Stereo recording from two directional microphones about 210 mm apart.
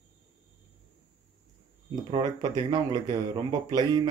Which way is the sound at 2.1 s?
20° right (ahead or behind).